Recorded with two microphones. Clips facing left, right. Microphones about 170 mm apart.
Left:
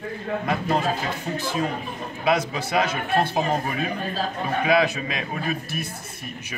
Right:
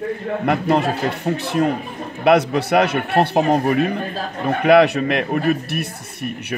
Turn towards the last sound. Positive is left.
turn(degrees=-65)  # may be behind; listen again after turning